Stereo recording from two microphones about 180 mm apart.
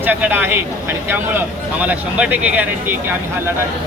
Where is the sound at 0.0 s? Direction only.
10° right (ahead or behind).